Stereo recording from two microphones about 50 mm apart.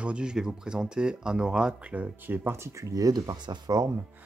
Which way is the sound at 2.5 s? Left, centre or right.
Right.